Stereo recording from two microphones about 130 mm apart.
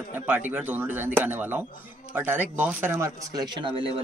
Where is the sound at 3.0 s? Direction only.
30° right (ahead or behind).